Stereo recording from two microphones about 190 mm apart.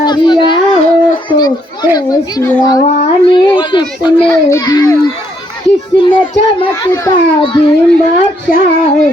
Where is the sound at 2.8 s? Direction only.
30° left (ahead or behind).